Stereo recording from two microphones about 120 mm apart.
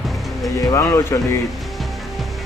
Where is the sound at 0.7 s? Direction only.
25° left (ahead or behind).